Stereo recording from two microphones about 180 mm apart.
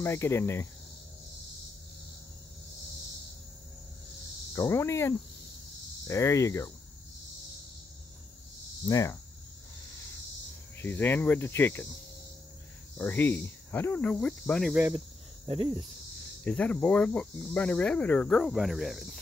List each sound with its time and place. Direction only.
0.0 s cricket: 15° left (ahead or behind)
4.6 s cricket: 15° left (ahead or behind)
8.8 s cricket: 15° left (ahead or behind)
10.8 s cricket: 10° left (ahead or behind)
12.9 s cricket: 10° left (ahead or behind)
14.7 s speech: 15° right (ahead or behind)
15.4 s speech: 30° right (ahead or behind)
16.4 s cricket: 5° left (ahead or behind)